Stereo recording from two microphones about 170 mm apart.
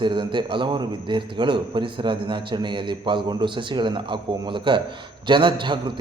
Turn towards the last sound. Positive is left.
turn(degrees=-30)  # may be behind; listen again after turning